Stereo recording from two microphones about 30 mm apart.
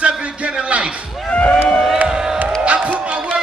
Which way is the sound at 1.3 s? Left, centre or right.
Left.